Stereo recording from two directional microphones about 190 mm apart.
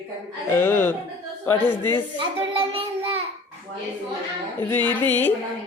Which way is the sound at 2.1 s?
30° right (ahead or behind).